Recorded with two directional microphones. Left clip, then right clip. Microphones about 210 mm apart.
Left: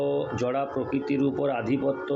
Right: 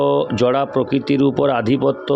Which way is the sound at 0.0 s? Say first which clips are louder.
Right 11 dB; 50° right (ahead or behind).